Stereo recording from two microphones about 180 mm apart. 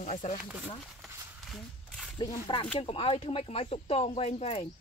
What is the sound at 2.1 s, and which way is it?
Speech, 25° left (ahead or behind).